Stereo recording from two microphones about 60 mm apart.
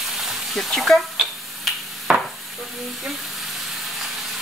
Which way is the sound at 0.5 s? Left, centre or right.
Centre.